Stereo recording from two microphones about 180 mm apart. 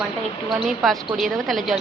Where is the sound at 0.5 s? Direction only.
Centre (ahead or behind).